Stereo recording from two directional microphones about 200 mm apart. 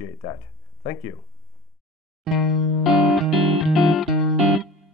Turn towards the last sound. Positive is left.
turn(degrees=0)  # may be behind; listen again after turning